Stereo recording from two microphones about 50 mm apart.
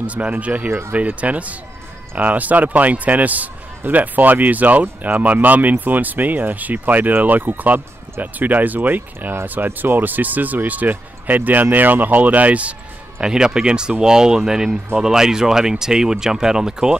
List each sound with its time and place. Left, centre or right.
0.0 s speech: right
0.7 s speech: right
0.9 s speech: right
13.2 s speech: centre